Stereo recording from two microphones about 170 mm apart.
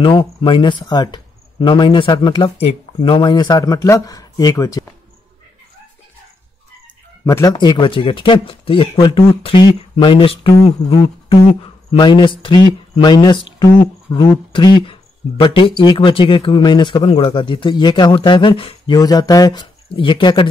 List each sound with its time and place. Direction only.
0.0 s speech: 30° left (ahead or behind)
7.2 s speech: 20° left (ahead or behind)
9.4 s a sound: 30° left (ahead or behind)
11.9 s speech: 25° left (ahead or behind)